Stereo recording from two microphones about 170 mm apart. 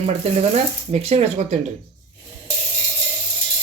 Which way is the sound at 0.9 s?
40° right (ahead or behind).